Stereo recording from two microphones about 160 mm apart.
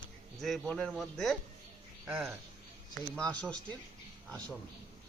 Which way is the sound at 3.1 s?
5° left (ahead or behind).